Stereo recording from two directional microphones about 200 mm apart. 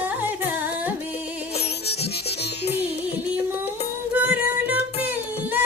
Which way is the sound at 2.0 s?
55° left (ahead or behind).